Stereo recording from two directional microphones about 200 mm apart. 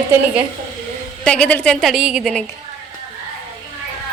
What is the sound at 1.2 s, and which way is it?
Speech, 5° left (ahead or behind).